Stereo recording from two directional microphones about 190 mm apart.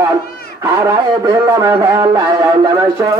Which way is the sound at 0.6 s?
15° right (ahead or behind).